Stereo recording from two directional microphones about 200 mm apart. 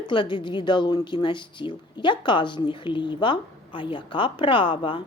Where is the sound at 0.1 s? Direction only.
25° left (ahead or behind).